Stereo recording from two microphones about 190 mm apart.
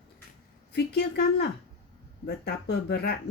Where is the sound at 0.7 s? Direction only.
60° left (ahead or behind).